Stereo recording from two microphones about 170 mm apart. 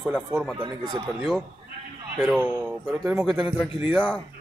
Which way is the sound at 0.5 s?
25° right (ahead or behind).